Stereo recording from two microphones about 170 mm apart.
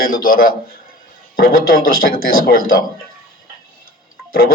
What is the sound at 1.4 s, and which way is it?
A man's voice, 60° left (ahead or behind).